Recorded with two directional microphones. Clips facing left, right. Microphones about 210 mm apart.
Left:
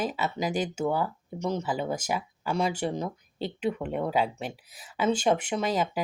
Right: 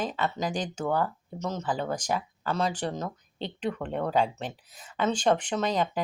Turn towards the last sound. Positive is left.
turn(degrees=5)  # may be behind; listen again after turning